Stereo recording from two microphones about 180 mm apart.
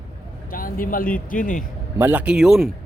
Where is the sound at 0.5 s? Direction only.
50° left (ahead or behind).